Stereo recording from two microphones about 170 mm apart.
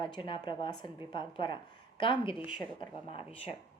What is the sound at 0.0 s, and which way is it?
Speech, 30° left (ahead or behind).